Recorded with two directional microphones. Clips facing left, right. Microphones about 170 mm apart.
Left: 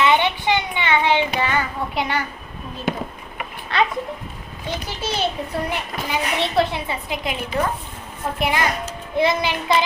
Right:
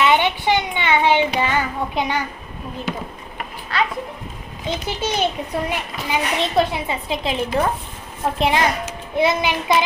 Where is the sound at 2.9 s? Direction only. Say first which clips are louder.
Left 4 dB; 55° left (ahead or behind).